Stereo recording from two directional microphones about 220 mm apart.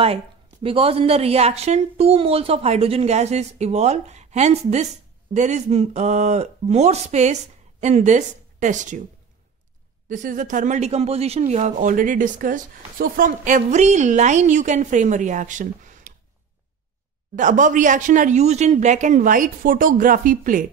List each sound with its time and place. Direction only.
0.0 s a woman's voice: 25° right (ahead or behind)
10.0 s speech: 35° right (ahead or behind)
17.4 s speech: 35° right (ahead or behind)